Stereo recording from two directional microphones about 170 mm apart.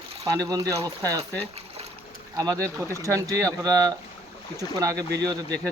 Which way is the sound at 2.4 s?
20° right (ahead or behind).